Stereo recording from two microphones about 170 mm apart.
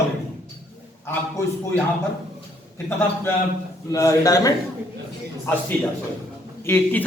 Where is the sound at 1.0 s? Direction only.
15° left (ahead or behind).